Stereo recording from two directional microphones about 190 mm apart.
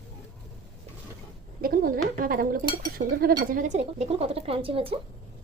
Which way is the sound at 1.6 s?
50° right (ahead or behind).